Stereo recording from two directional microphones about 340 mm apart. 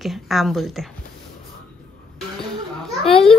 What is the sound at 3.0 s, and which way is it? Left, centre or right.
Speech, centre.